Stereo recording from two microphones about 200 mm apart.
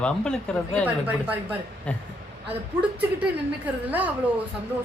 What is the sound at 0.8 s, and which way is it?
Speech, 10° right (ahead or behind).